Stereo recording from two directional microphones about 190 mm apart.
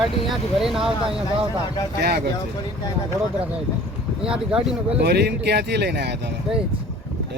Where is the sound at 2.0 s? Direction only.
55° right (ahead or behind).